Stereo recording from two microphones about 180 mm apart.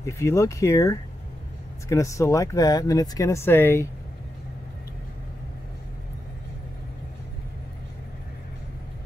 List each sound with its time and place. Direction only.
0.0 s speech: 15° left (ahead or behind)